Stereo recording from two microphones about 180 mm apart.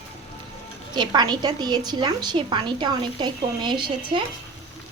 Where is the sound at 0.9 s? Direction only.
25° right (ahead or behind).